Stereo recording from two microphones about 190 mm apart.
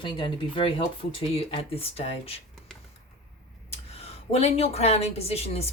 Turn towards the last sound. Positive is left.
turn(degrees=30)  # may be behind; listen again after turning